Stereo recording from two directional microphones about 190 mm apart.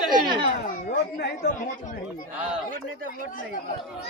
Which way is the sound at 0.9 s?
55° left (ahead or behind).